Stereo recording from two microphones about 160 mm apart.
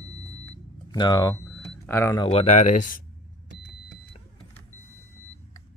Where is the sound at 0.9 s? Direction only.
25° left (ahead or behind).